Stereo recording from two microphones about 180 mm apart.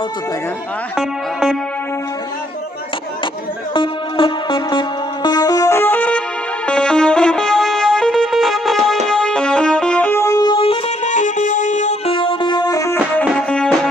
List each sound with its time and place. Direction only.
0.9 s music: centre (ahead or behind)
3.7 s music: 25° left (ahead or behind)
11.1 s music: 45° left (ahead or behind)
12.2 s music: 25° left (ahead or behind); by 13.7 s 5° left (ahead or behind)